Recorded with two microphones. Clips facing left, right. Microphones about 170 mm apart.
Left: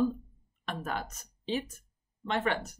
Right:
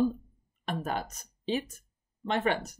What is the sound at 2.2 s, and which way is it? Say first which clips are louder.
Speech: right 2 dB; 15° right (ahead or behind).